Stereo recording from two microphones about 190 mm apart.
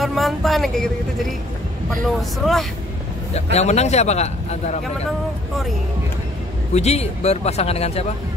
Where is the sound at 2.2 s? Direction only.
Centre (ahead or behind).